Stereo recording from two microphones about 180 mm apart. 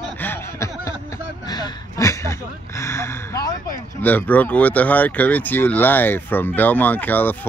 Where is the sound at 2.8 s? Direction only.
15° left (ahead or behind).